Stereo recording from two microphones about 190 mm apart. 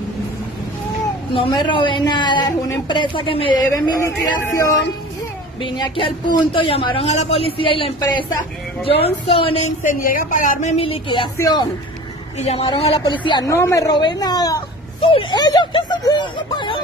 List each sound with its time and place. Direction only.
1.3 s a woman's voice: 25° left (ahead or behind)
5.6 s a woman's voice: 25° left (ahead or behind)
9.8 s speech: 45° left (ahead or behind); by 11.6 s 20° left (ahead or behind)
12.4 s a woman's voice: 30° left (ahead or behind)